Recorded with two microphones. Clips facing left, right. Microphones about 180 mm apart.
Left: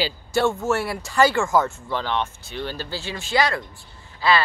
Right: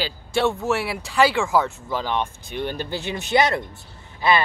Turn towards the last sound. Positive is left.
turn(degrees=-20)  # may be behind; listen again after turning